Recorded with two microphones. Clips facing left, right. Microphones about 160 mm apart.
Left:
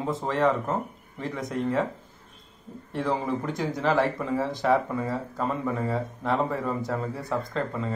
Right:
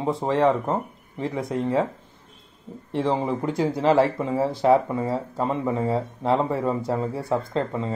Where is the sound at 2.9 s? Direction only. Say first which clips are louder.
Right 4 dB; 25° right (ahead or behind).